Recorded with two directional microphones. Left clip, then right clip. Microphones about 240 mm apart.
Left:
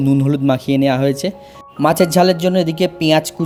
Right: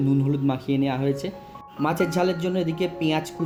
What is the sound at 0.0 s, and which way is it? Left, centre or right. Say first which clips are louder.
Speech: left 8 dB; left.